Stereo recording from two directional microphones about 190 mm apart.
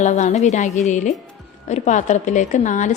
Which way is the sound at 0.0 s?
40° left (ahead or behind).